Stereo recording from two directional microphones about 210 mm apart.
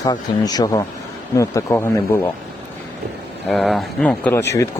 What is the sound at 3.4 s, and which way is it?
Speech, centre (ahead or behind).